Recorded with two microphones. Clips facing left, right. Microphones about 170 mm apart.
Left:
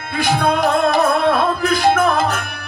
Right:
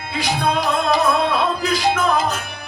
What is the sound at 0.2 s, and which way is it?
Music, 55° left (ahead or behind).